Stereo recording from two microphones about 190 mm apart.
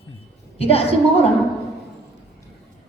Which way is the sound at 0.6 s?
30° left (ahead or behind).